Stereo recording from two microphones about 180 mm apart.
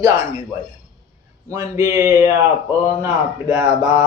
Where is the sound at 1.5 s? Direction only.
15° right (ahead or behind).